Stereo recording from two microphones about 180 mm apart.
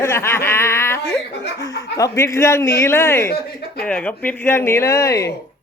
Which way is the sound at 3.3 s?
60° left (ahead or behind).